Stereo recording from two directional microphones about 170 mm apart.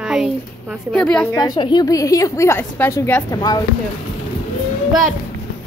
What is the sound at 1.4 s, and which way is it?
A woman's voice, 25° left (ahead or behind).